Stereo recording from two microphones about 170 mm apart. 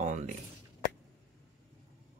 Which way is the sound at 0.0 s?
45° right (ahead or behind).